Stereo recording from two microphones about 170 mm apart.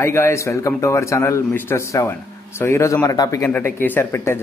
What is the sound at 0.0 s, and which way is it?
A man's voice, 15° left (ahead or behind).